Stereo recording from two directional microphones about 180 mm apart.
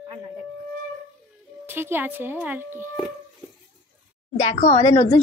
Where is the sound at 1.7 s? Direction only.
10° right (ahead or behind).